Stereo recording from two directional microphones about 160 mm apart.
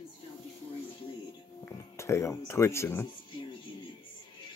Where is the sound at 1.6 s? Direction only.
15° left (ahead or behind).